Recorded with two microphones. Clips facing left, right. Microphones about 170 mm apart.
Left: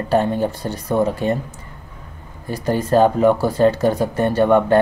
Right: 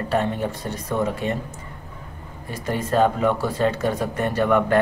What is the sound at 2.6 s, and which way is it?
Speech, 35° left (ahead or behind).